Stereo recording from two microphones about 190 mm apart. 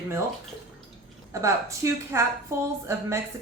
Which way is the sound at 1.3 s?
15° right (ahead or behind).